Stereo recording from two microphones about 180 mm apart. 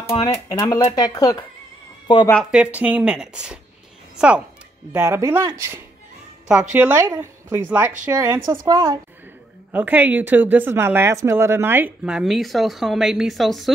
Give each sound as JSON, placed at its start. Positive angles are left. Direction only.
{"t": 0.2, "sound": "speech", "side_deg": 20}
{"t": 2.5, "sound": "speech", "side_deg": -10}
{"t": 4.9, "sound": "a woman's voice", "side_deg": -15}